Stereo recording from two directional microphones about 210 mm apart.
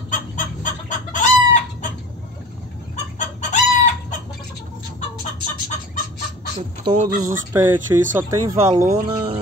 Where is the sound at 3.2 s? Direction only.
35° left (ahead or behind).